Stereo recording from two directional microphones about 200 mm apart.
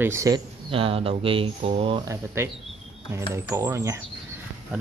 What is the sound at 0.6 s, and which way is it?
Speech, 30° right (ahead or behind).